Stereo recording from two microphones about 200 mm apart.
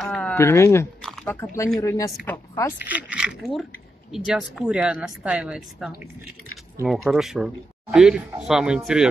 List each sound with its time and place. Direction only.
0.0 s speech: 5° left (ahead or behind)
1.0 s oink: 5° left (ahead or behind)
1.8 s speech: 15° left (ahead or behind)
2.9 s speech: 5° right (ahead or behind)